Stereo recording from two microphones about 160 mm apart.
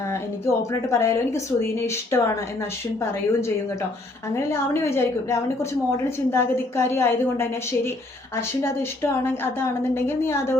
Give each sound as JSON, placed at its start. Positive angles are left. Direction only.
{"t": 0.1, "sound": "a woman's voice", "side_deg": 20}
{"t": 4.4, "sound": "a woman's voice", "side_deg": 15}